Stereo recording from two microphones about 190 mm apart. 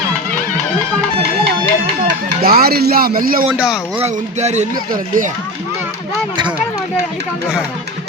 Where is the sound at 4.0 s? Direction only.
35° right (ahead or behind).